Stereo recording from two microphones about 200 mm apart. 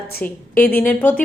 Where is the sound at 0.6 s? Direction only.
50° left (ahead or behind).